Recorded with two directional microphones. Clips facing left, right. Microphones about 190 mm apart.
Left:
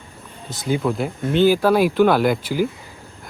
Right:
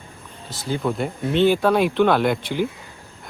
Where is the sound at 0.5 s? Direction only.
20° left (ahead or behind).